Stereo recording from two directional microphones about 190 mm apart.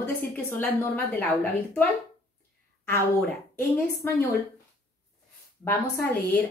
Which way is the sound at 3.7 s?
15° left (ahead or behind).